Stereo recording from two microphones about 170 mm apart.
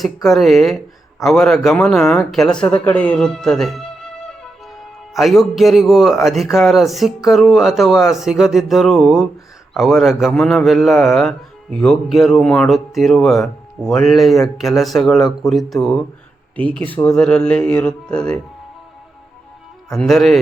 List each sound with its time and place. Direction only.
0.0 s a man's voice: centre (ahead or behind)
5.1 s a man's voice: centre (ahead or behind)
19.9 s a man's voice: centre (ahead or behind)